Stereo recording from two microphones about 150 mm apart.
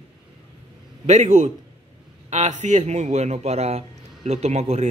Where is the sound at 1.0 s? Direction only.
50° right (ahead or behind).